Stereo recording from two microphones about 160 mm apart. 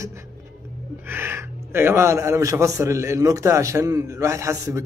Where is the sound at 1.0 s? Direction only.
15° right (ahead or behind).